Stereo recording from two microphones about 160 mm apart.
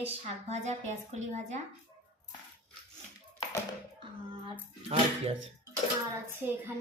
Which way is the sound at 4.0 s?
30° right (ahead or behind).